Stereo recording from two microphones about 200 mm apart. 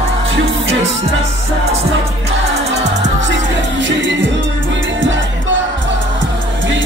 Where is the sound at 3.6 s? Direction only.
65° right (ahead or behind).